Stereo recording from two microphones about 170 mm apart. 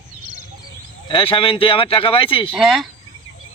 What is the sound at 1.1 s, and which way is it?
Speech, 30° left (ahead or behind).